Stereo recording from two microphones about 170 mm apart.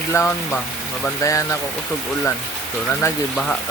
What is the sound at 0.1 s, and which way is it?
Speech, 15° left (ahead or behind).